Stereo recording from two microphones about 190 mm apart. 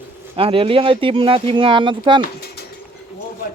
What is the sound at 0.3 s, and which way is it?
Speech, 30° right (ahead or behind).